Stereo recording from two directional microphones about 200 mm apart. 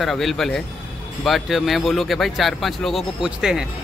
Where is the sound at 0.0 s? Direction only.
Centre (ahead or behind).